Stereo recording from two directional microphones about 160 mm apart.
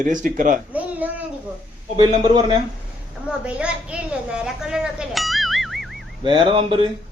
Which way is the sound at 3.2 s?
5° right (ahead or behind).